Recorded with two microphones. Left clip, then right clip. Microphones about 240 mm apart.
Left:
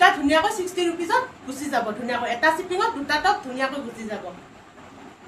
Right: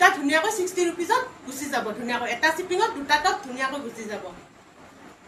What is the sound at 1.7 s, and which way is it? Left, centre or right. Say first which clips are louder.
A woman's voice: left 2 dB; centre.